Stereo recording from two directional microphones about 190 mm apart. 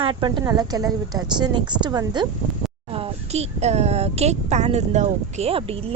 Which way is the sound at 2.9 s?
30° right (ahead or behind).